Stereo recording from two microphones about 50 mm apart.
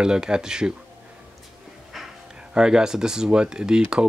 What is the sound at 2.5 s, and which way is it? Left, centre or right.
Speech, centre.